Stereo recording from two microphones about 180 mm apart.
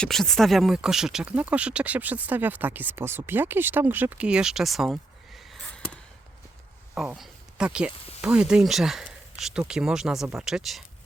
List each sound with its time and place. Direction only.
0.0 s speech: centre (ahead or behind)